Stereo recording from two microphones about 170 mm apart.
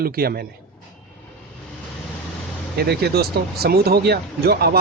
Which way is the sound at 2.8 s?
70° right (ahead or behind).